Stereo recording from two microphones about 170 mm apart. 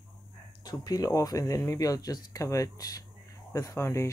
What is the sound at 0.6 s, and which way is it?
Speech, 25° left (ahead or behind).